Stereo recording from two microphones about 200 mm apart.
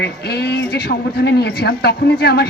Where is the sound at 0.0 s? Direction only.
55° left (ahead or behind).